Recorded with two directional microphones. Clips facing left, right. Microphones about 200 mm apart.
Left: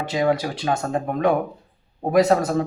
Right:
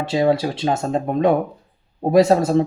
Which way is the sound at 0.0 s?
25° right (ahead or behind).